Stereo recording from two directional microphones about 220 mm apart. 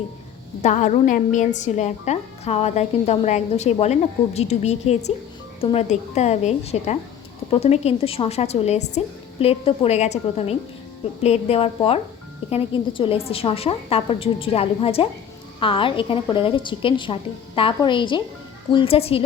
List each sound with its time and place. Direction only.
0.6 s a woman's voice: 35° left (ahead or behind)